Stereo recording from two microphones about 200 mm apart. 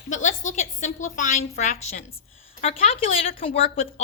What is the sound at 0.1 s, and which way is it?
A woman's voice, 35° left (ahead or behind).